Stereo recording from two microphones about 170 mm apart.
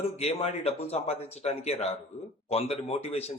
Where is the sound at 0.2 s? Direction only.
35° left (ahead or behind).